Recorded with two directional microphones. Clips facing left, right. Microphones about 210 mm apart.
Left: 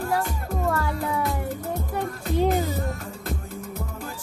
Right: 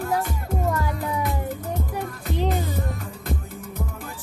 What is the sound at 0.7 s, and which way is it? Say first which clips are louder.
Music: left 1 dB; 15° right (ahead or behind).